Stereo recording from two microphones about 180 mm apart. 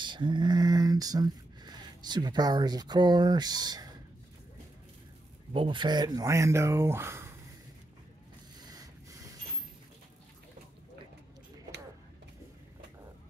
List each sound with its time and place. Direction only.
0.0 s a sound: 25° right (ahead or behind)
5.5 s speech: 30° right (ahead or behind)
8.5 s rub: 20° right (ahead or behind)